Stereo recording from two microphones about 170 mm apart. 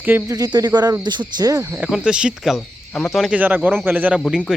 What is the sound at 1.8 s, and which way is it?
Speech, 5° right (ahead or behind).